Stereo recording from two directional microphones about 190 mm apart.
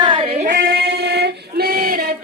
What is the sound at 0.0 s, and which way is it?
Child singing, 25° right (ahead or behind).